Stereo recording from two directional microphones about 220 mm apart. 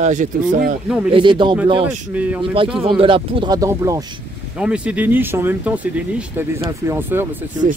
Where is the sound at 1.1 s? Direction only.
20° right (ahead or behind).